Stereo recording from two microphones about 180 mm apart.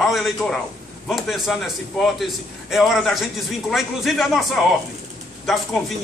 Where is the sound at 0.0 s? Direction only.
Centre (ahead or behind).